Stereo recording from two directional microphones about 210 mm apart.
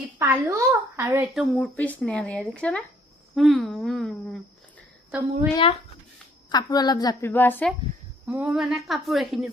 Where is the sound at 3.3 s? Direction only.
Centre (ahead or behind).